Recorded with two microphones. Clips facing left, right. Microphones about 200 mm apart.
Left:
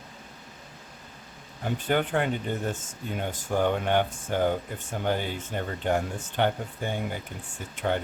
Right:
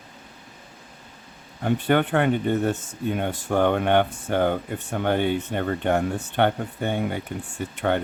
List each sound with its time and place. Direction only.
1.6 s speech: 60° right (ahead or behind)